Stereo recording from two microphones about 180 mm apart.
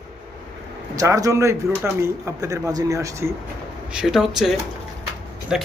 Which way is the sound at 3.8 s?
5° right (ahead or behind).